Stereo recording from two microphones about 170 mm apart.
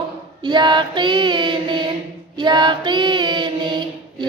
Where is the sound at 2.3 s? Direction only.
25° right (ahead or behind).